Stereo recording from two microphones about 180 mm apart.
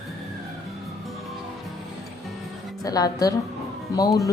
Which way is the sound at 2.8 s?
20° left (ahead or behind).